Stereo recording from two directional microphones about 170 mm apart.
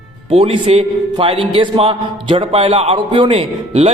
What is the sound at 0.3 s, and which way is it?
A man's voice, 35° right (ahead or behind).